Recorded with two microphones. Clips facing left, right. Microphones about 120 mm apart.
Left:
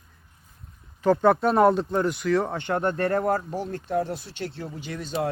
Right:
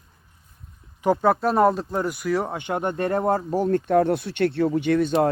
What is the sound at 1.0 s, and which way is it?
Speech, 15° right (ahead or behind).